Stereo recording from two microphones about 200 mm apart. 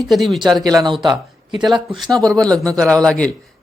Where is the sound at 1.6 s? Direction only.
Centre (ahead or behind).